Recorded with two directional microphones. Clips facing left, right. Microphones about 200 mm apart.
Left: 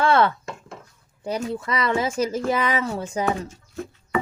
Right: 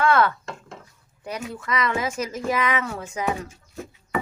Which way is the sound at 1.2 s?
30° left (ahead or behind).